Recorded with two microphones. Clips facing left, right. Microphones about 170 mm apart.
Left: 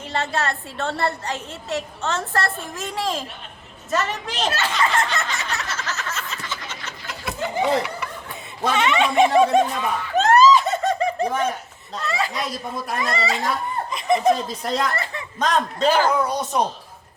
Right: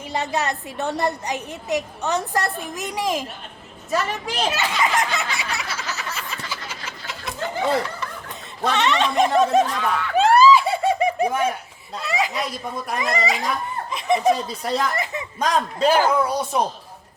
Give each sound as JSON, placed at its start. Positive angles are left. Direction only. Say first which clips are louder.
{"t": 0.1, "sound": "a woman's voice", "louder": "even", "side_deg": -15}
{"t": 4.7, "sound": "a sound", "louder": "even", "side_deg": -10}
{"t": 7.5, "sound": "a sound", "louder": "left 1 dB", "side_deg": 15}
{"t": 8.6, "sound": "speech", "louder": "even", "side_deg": 5}
{"t": 10.2, "sound": "snicker", "louder": "even", "side_deg": -10}
{"t": 11.9, "sound": "a woman's voice", "louder": "right 1 dB", "side_deg": -15}
{"t": 13.9, "sound": "speech", "louder": "even", "side_deg": -5}
{"t": 14.9, "sound": "a woman's voice", "louder": "right 1 dB", "side_deg": -15}